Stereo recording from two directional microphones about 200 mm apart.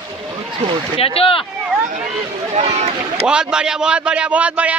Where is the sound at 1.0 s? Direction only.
30° left (ahead or behind).